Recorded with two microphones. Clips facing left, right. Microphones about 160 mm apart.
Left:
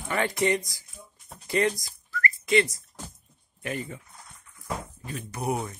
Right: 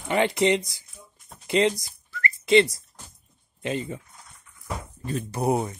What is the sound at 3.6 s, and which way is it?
Speech, 25° right (ahead or behind).